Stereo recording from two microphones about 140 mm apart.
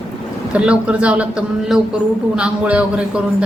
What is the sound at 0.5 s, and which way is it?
A man's voice, 10° right (ahead or behind).